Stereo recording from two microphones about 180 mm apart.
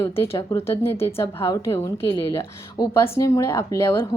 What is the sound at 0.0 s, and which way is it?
Speech, 15° left (ahead or behind).